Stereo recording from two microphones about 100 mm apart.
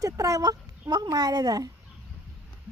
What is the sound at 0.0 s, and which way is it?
Speech, 35° right (ahead or behind).